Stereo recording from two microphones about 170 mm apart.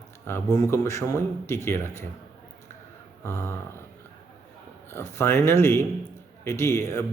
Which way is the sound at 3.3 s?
15° left (ahead or behind).